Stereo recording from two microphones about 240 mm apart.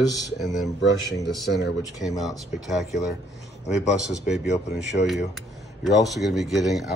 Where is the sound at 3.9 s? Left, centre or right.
Centre.